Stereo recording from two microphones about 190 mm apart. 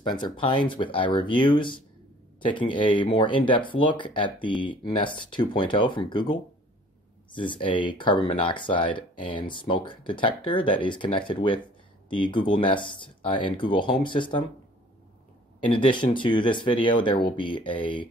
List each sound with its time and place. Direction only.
0.1 s speech: 25° left (ahead or behind)
7.3 s speech: 25° left (ahead or behind)
15.6 s speech: 25° left (ahead or behind)